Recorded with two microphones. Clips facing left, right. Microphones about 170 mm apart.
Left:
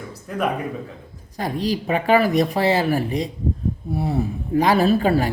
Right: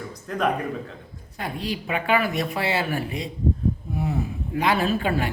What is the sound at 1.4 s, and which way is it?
A woman's voice, 40° left (ahead or behind).